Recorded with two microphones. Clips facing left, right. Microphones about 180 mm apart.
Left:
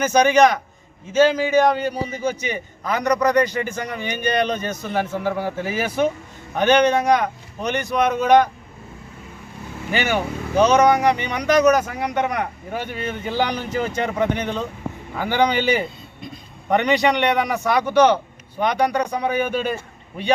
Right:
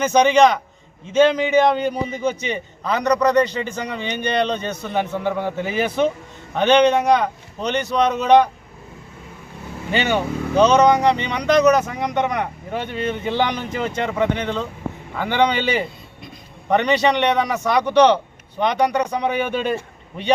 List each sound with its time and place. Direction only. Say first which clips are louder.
0.0 s a man's voice: right 1 dB; 10° left (ahead or behind)
9.9 s speech: right 2 dB; 20° right (ahead or behind)
10.5 s a man's voice: right 1 dB; 10° left (ahead or behind)